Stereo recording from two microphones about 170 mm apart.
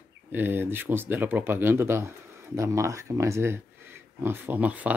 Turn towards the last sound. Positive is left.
turn(degrees=-10)  # may be behind; listen again after turning